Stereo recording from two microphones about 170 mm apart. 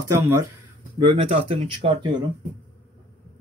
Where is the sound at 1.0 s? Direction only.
35° right (ahead or behind).